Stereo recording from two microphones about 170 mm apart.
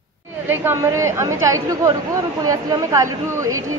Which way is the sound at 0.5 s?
15° right (ahead or behind).